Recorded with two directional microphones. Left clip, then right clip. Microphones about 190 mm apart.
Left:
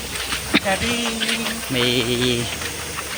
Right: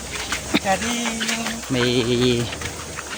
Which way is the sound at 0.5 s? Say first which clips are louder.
Left 3 dB; 5° right (ahead or behind).